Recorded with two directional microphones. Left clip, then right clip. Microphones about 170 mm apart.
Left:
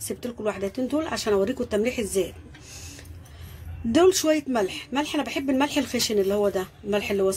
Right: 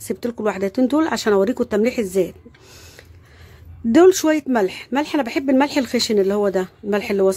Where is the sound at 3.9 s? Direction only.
65° right (ahead or behind).